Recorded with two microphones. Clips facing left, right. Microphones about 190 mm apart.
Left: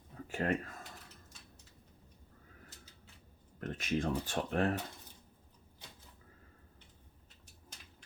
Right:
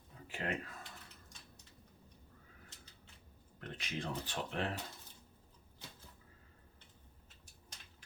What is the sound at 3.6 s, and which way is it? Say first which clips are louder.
Speech: left 8 dB; 45° left (ahead or behind).